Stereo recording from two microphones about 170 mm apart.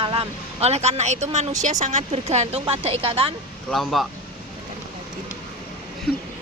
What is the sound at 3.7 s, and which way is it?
Speech, centre (ahead or behind).